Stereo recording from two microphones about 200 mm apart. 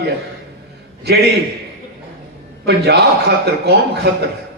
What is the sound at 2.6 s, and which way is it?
A man's voice, 55° right (ahead or behind).